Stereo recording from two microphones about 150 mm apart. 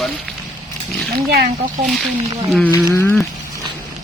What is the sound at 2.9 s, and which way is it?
Speech, 15° left (ahead or behind).